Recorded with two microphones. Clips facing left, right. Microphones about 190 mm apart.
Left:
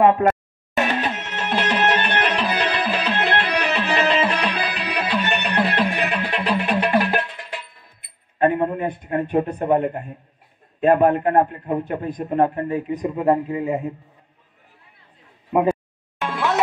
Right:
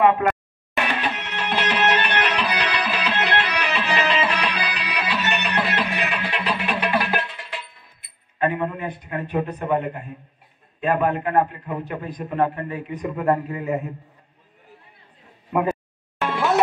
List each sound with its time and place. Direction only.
0.7 s music: 45° left (ahead or behind)
8.4 s a man's voice: 45° left (ahead or behind)
13.1 s speech: 25° left (ahead or behind)